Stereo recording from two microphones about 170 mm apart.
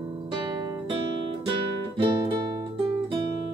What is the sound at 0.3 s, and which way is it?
Guitar, 25° right (ahead or behind).